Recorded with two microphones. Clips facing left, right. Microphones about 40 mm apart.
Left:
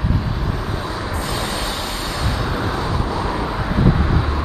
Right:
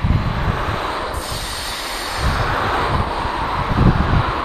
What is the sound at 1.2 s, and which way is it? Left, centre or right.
Train, centre.